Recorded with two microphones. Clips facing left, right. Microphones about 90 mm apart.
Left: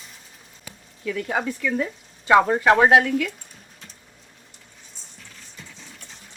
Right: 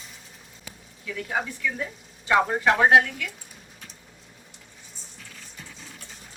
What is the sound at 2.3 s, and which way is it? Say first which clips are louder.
Speech: left 5 dB; 90° left.